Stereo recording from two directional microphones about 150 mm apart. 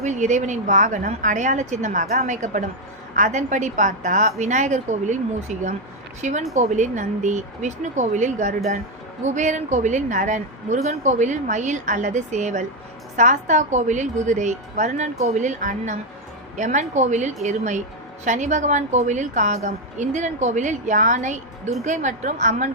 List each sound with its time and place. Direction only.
0.0 s a woman's voice: 55° right (ahead or behind)